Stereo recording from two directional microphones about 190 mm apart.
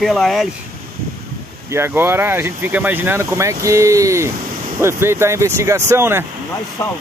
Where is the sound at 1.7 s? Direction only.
10° right (ahead or behind).